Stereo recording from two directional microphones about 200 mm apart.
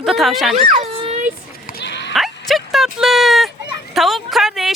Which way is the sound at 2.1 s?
Centre (ahead or behind).